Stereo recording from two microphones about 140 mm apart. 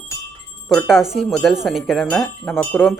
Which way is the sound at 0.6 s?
Centre (ahead or behind).